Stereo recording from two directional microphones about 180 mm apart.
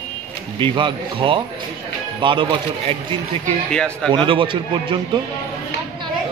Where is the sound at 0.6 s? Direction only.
25° right (ahead or behind).